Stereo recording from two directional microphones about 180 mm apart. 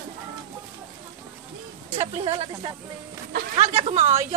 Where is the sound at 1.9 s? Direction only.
35° right (ahead or behind).